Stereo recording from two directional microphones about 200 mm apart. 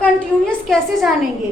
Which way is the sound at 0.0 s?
5° left (ahead or behind).